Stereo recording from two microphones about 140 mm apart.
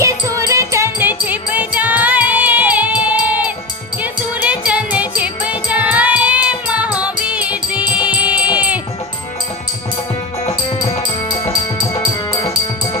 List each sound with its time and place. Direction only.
0.0 s music: 20° right (ahead or behind)
10.8 s music: 35° left (ahead or behind)